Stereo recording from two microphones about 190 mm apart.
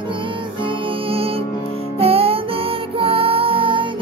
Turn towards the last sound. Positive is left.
turn(degrees=-30)  # may be behind; listen again after turning